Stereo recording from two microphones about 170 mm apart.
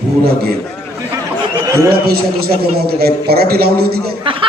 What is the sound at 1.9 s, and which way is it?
A man's voice, 65° right (ahead or behind).